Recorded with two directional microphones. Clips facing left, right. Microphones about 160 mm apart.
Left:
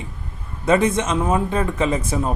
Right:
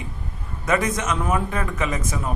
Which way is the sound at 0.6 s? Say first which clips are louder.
Left 5 dB; 30° left (ahead or behind).